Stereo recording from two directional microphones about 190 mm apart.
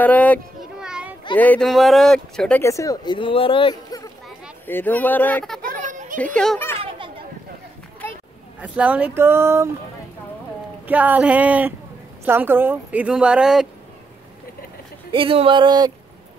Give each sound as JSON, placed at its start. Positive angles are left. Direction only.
{"t": 0.0, "sound": "a sound", "side_deg": 10}
{"t": 0.7, "sound": "children playing", "side_deg": -5}
{"t": 1.3, "sound": "speech", "side_deg": 10}
{"t": 2.6, "sound": "speech", "side_deg": 15}
{"t": 5.6, "sound": "children playing", "side_deg": -45}
{"t": 6.1, "sound": "speech", "side_deg": 5}
{"t": 6.8, "sound": "children playing", "side_deg": -30}
{"t": 8.5, "sound": "speech", "side_deg": -5}
{"t": 10.9, "sound": "speech", "side_deg": -10}
{"t": 15.0, "sound": "speech", "side_deg": -30}